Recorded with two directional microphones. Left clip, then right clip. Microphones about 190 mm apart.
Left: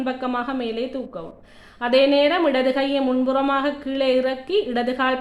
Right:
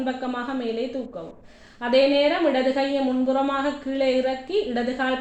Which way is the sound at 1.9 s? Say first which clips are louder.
Left 2 dB; 30° left (ahead or behind).